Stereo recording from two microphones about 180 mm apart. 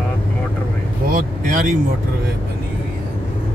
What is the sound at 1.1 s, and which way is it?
Vehicle, 45° right (ahead or behind).